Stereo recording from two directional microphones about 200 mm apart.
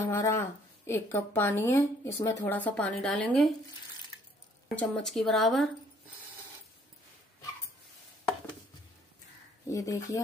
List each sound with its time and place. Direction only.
0.0 s speech: 15° left (ahead or behind)
4.6 s speech: 5° left (ahead or behind)
9.7 s speech: 15° left (ahead or behind)